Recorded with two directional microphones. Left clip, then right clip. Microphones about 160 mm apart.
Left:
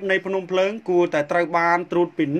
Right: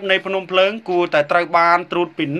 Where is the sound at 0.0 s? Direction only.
40° left (ahead or behind).